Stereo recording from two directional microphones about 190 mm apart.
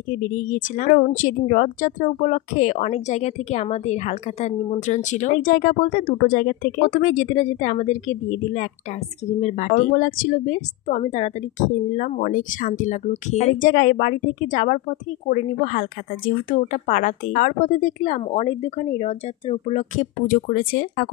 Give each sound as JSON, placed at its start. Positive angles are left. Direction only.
{"t": 0.1, "sound": "speech", "side_deg": 45}